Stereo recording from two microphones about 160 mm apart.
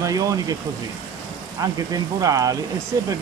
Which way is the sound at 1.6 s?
20° right (ahead or behind).